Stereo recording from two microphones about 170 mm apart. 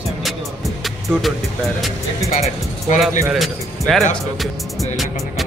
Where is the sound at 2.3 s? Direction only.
40° left (ahead or behind).